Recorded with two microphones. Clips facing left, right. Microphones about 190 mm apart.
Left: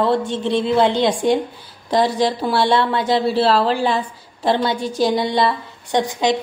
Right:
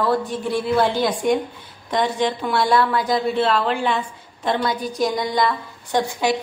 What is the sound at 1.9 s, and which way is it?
A woman's voice, 35° left (ahead or behind).